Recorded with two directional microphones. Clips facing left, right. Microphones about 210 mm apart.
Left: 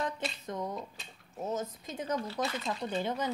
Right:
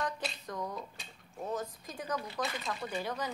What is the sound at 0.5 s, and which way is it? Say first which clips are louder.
Speech: left 3 dB; 20° left (ahead or behind).